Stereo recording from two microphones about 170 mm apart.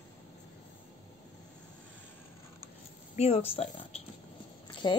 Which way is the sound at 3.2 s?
40° left (ahead or behind).